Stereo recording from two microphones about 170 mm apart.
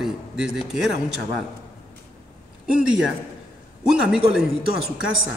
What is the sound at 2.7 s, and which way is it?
A man's voice, 5° right (ahead or behind).